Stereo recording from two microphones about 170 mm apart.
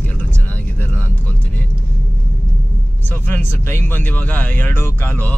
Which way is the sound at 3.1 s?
10° left (ahead or behind).